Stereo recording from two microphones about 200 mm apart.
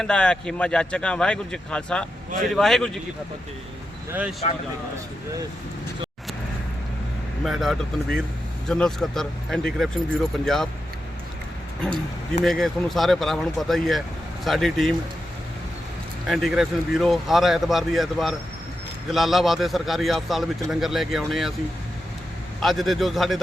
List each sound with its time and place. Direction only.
0.0 s speech: 5° left (ahead or behind)
4.1 s speech: 5° right (ahead or behind)
7.4 s speech: centre (ahead or behind)
12.5 s speech: centre (ahead or behind)
16.2 s speech: centre (ahead or behind)
22.6 s speech: centre (ahead or behind)